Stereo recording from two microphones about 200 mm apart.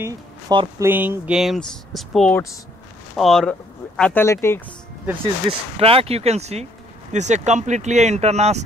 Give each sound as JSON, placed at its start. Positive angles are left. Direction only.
{"t": 0.0, "sound": "speech", "side_deg": -20}
{"t": 5.5, "sound": "speech", "side_deg": -30}